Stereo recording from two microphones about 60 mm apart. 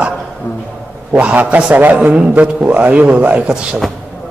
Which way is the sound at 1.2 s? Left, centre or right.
Right.